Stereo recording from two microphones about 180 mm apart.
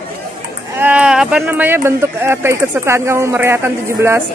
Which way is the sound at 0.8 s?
5° right (ahead or behind).